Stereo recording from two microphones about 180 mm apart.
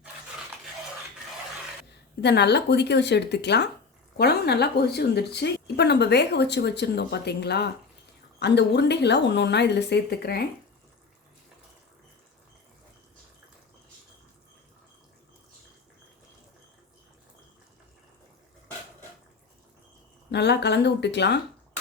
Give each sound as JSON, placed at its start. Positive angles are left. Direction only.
{"t": 1.9, "sound": "a woman's voice", "side_deg": 70}
{"t": 20.3, "sound": "a woman's voice", "side_deg": 70}